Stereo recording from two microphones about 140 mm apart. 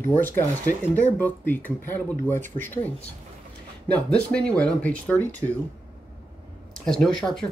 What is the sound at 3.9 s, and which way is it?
Speech, 5° left (ahead or behind).